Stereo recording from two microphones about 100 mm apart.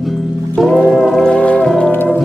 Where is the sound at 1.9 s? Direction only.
20° left (ahead or behind).